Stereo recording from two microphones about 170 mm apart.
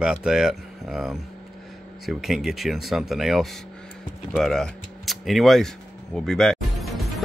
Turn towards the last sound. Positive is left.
turn(degrees=0)  # may be behind; listen again after turning